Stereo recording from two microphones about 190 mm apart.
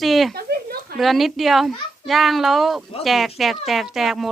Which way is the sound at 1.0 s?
Centre (ahead or behind).